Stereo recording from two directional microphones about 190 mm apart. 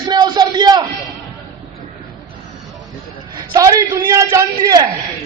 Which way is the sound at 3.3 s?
20° right (ahead or behind).